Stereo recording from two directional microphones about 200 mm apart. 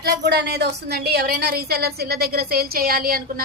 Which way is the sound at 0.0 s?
55° right (ahead or behind).